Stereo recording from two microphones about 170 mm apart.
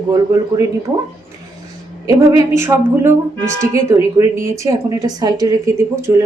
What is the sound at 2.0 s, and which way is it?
A woman's voice, 20° right (ahead or behind).